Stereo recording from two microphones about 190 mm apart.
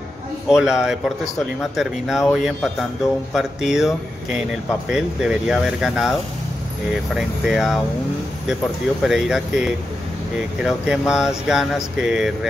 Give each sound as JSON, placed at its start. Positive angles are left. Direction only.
{"t": 0.5, "sound": "speech", "side_deg": 0}
{"t": 7.2, "sound": "speech", "side_deg": 0}
{"t": 9.0, "sound": "speech", "side_deg": 0}